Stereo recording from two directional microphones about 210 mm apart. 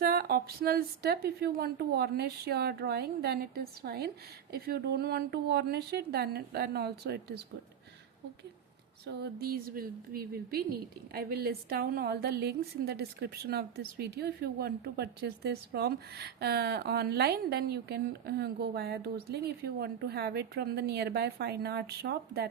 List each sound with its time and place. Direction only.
0.0 s speech: 50° right (ahead or behind)
9.0 s speech: 50° right (ahead or behind)